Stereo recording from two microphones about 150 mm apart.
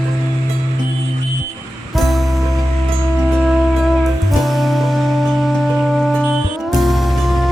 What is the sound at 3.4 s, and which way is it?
Music, centre (ahead or behind).